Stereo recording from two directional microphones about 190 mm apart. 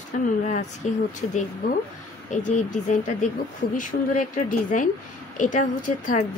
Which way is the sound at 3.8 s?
45° left (ahead or behind).